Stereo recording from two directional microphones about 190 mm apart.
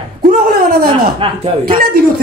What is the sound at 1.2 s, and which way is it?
Speech, 25° right (ahead or behind).